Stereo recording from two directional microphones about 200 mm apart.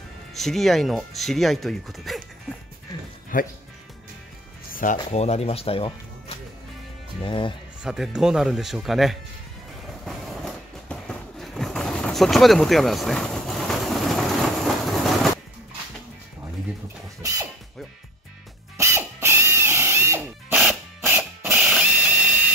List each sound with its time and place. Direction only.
0.3 s speech: centre (ahead or behind)
3.3 s speech: 40° left (ahead or behind)
4.9 s speech: 30° left (ahead or behind)
7.8 s speech: 5° right (ahead or behind)
10.0 s vehicle: centre (ahead or behind)
18.8 s a sound: 10° right (ahead or behind)